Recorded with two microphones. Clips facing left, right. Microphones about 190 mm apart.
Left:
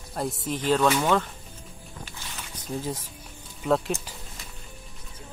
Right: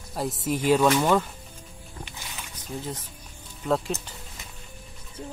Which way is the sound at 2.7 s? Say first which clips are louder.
Left 3 dB; 30° left (ahead or behind).